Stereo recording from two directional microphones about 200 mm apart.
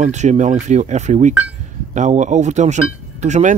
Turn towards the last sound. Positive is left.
turn(degrees=-35)  # may be behind; listen again after turning